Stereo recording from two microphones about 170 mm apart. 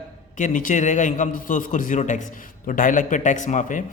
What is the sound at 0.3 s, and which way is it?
A man's voice, 50° left (ahead or behind).